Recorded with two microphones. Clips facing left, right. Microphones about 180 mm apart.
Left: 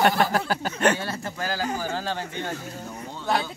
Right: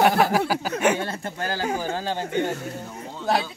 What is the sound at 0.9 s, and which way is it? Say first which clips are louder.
Speech: right 2 dB; 25° right (ahead or behind).